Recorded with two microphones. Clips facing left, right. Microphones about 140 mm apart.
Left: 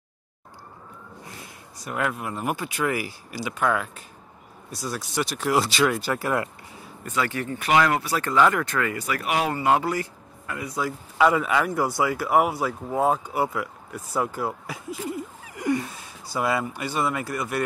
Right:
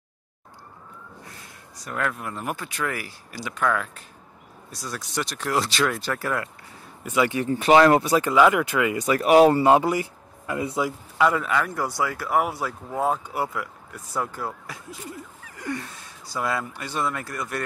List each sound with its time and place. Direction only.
1.9 s speech: 10° left (ahead or behind)
6.2 s speech: 20° left (ahead or behind)
7.0 s speech: 15° right (ahead or behind)
7.4 s speech: 30° right (ahead or behind)
8.1 s speech: 10° right (ahead or behind)
9.2 s speech: 35° right (ahead or behind)
9.7 s a man's voice: 20° right (ahead or behind)
11.1 s speech: 5° left (ahead or behind)